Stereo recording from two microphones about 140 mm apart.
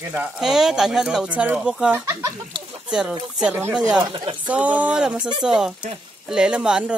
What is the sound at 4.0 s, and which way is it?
Speech, 35° right (ahead or behind).